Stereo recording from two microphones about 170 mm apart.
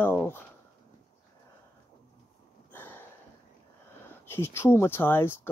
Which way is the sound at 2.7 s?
10° left (ahead or behind).